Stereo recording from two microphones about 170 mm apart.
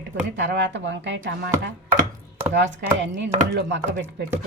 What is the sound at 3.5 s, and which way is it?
Chopping, 80° right.